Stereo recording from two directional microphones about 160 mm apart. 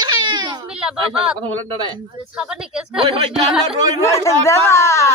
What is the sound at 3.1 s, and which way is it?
Speech, 30° right (ahead or behind).